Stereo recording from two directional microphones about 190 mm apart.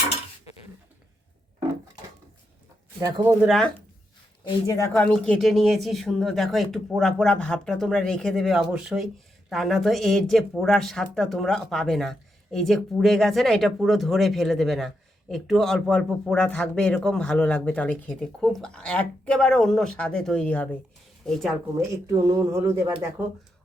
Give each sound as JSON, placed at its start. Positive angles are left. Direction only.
{"t": 3.0, "sound": "speech", "side_deg": -20}
{"t": 3.4, "sound": "a woman's voice", "side_deg": 0}
{"t": 4.4, "sound": "a woman's voice", "side_deg": 20}
{"t": 22.0, "sound": "speech", "side_deg": -20}